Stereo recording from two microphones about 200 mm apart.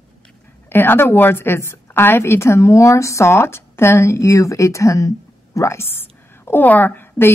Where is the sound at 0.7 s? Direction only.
10° left (ahead or behind).